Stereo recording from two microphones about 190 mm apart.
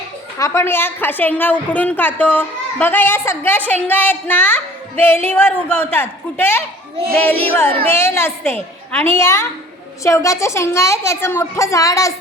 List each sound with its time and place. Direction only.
0.3 s a woman's voice: 15° left (ahead or behind)